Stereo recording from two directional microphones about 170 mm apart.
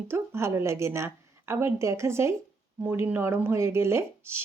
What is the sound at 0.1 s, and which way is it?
Speech, 15° right (ahead or behind).